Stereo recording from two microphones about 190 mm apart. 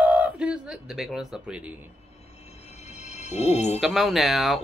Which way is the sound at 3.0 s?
35° left (ahead or behind).